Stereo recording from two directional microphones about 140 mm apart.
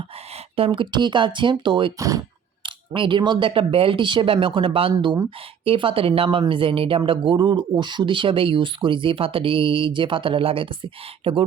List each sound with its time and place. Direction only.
0.5 s speech: 40° right (ahead or behind)
2.0 s speech: 25° right (ahead or behind)
2.6 s speech: 35° right (ahead or behind)